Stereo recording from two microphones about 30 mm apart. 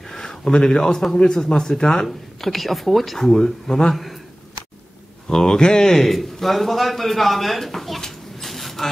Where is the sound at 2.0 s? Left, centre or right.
Centre.